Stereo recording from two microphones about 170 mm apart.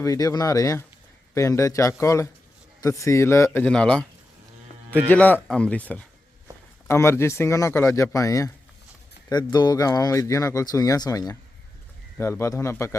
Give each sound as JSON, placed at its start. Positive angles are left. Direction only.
{"t": 0.0, "sound": "speech", "side_deg": 20}
{"t": 5.0, "sound": "speech", "side_deg": 10}